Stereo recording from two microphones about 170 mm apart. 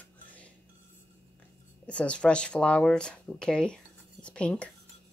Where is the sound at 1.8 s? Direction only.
5° left (ahead or behind).